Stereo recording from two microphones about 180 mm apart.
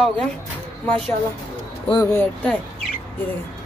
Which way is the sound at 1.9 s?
10° left (ahead or behind).